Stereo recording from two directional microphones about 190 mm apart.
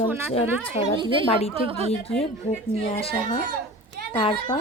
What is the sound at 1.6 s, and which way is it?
Speech, 30° right (ahead or behind).